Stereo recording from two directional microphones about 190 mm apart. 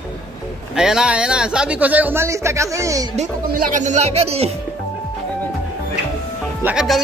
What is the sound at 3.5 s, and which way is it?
Speech, 45° right (ahead or behind).